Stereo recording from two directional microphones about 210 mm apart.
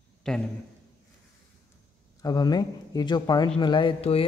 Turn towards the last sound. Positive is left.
turn(degrees=25)  # may be behind; listen again after turning